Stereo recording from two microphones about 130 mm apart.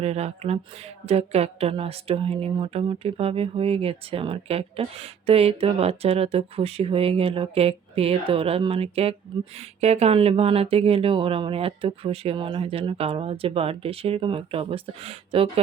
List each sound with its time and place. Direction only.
0.0 s speech: 55° right (ahead or behind)